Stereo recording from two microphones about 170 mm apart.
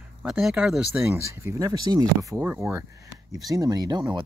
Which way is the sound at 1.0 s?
15° right (ahead or behind).